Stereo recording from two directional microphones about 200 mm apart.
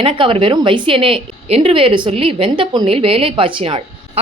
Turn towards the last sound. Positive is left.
turn(degrees=-25)  # may be behind; listen again after turning